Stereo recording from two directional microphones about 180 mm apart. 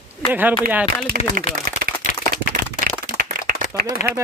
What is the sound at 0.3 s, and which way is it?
Speech, 10° right (ahead or behind).